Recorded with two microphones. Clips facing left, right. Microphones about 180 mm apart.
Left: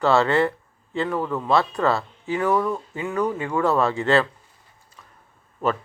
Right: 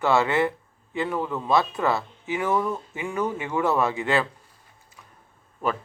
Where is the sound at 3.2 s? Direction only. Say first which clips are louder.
Left 3 dB; 20° right (ahead or behind).